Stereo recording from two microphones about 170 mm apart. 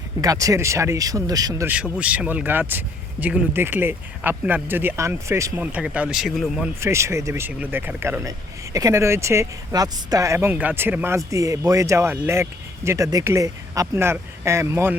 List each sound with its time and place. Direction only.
0.2 s speech: 20° right (ahead or behind)
1.6 s speech: 5° right (ahead or behind)
6.7 s speech: 15° right (ahead or behind)